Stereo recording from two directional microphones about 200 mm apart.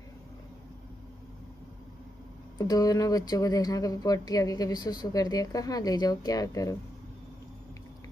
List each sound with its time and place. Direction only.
2.6 s speech: 20° left (ahead or behind)